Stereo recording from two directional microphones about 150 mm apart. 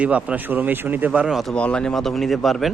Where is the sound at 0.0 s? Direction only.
10° right (ahead or behind).